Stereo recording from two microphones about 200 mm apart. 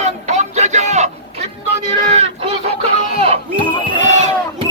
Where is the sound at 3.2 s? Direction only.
30° right (ahead or behind).